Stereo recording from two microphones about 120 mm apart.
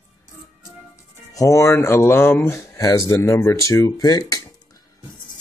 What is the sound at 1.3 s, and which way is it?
Speech, 25° left (ahead or behind).